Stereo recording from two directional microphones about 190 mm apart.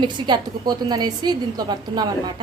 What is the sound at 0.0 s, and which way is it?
A woman's voice, 25° right (ahead or behind).